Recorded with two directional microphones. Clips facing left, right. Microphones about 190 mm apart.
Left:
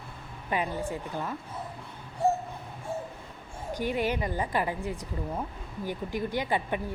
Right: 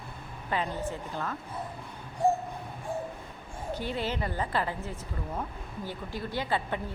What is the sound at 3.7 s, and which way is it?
Speech, 15° left (ahead or behind).